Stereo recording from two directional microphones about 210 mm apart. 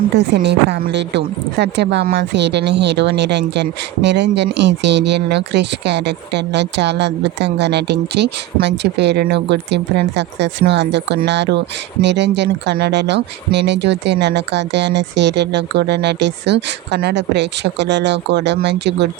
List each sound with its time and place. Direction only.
0.2 s a woman's voice: 55° right (ahead or behind)